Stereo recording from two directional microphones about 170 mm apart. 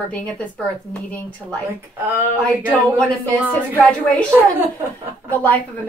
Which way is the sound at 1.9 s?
15° right (ahead or behind).